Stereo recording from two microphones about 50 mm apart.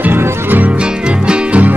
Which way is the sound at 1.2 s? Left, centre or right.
Centre.